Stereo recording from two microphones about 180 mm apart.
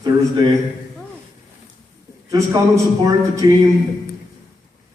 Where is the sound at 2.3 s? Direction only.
20° right (ahead or behind).